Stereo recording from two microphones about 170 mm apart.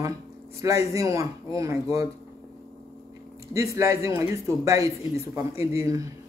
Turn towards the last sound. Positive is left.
turn(degrees=-15)  # may be behind; listen again after turning